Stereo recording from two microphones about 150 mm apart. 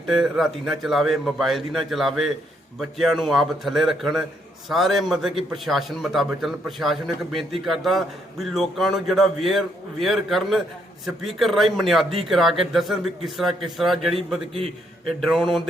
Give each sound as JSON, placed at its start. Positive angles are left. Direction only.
{"t": 0.1, "sound": "a man's voice", "side_deg": 0}